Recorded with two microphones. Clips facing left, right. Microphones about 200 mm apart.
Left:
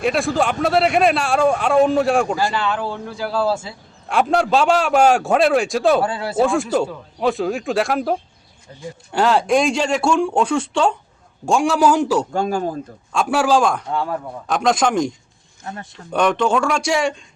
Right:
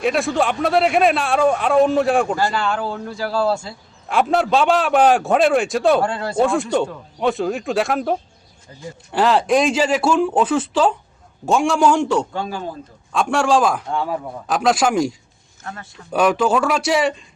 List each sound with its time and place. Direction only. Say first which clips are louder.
0.0 s a man's voice: even; centre (ahead or behind)
12.3 s speech: left 6 dB; 45° left (ahead or behind)
13.1 s a man's voice: even; 5° left (ahead or behind)
15.6 s speech: left 2 dB; 20° left (ahead or behind)
16.1 s a man's voice: right 1 dB; 5° right (ahead or behind)